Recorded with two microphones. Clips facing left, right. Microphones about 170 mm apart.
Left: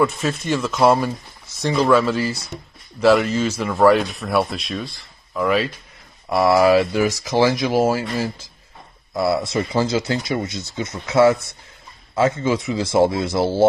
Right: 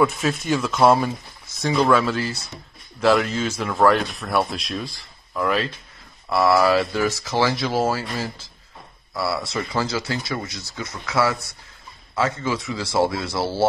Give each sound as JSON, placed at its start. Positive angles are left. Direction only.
{"t": 0.0, "sound": "speech", "side_deg": 0}
{"t": 6.2, "sound": "speech", "side_deg": 15}